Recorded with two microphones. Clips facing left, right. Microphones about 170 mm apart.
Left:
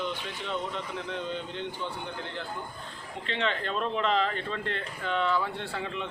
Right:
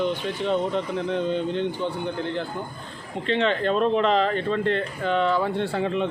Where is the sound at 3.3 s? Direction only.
60° right (ahead or behind).